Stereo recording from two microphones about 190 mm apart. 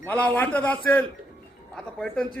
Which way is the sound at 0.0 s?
10° left (ahead or behind).